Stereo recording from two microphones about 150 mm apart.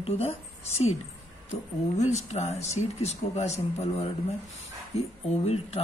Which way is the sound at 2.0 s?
50° left (ahead or behind).